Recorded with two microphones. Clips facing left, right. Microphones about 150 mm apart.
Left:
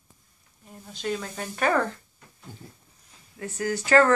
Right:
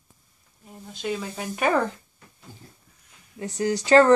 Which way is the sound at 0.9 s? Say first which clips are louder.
Right 1 dB; 5° right (ahead or behind).